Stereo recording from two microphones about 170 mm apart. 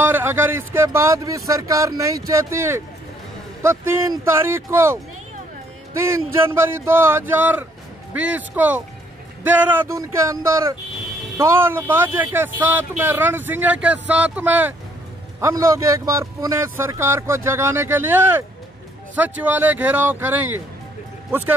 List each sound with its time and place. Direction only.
0.1 s speech: 10° right (ahead or behind)
3.8 s speech: 15° right (ahead or behind)
6.0 s speech: 15° right (ahead or behind)